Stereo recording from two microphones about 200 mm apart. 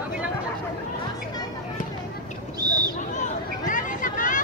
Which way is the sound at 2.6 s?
20° right (ahead or behind).